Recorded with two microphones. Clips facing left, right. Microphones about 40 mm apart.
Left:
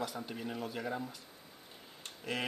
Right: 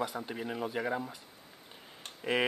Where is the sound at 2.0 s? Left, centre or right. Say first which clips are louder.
Right 7 dB; right.